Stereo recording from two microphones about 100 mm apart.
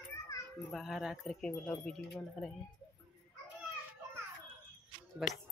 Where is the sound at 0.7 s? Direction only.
5° right (ahead or behind).